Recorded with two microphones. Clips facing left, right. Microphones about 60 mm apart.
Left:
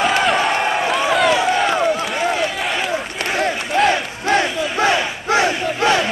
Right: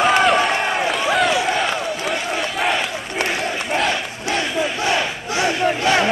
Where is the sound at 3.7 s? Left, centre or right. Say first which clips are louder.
Left 5 dB; centre.